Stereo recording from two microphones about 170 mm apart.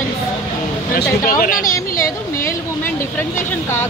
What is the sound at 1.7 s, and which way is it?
Speech, 20° left (ahead or behind).